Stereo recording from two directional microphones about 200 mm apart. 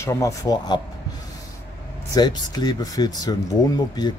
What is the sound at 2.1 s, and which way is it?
Speech, 20° left (ahead or behind).